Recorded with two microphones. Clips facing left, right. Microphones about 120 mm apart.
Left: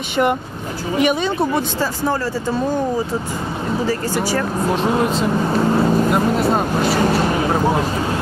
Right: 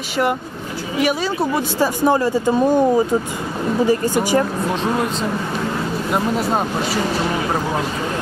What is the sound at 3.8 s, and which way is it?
Speech, 15° right (ahead or behind).